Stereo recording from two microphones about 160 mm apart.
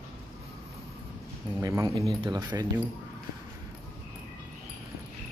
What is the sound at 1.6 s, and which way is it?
Speech, 20° right (ahead or behind).